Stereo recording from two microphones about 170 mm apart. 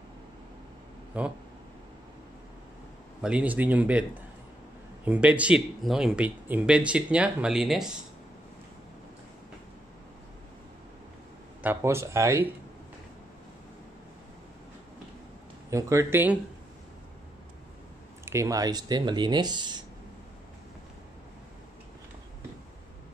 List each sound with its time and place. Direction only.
1.1 s speech: 5° right (ahead or behind)
3.2 s speech: 5° right (ahead or behind)
11.6 s speech: 15° right (ahead or behind)
15.7 s speech: 20° right (ahead or behind)
18.2 s speech: 15° right (ahead or behind)